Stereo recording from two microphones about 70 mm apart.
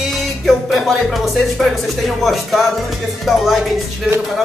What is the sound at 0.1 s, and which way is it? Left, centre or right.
Speech, centre.